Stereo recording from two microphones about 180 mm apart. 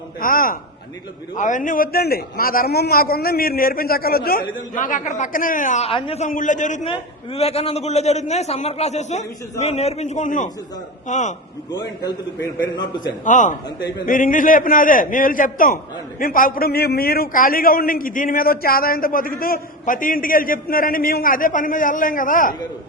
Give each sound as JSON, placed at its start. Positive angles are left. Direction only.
{"t": 0.2, "sound": "a man's voice", "side_deg": 50}
{"t": 6.8, "sound": "a man's voice", "side_deg": 30}
{"t": 13.2, "sound": "a man's voice", "side_deg": 45}